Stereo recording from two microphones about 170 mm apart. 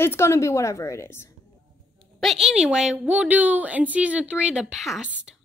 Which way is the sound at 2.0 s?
Centre (ahead or behind).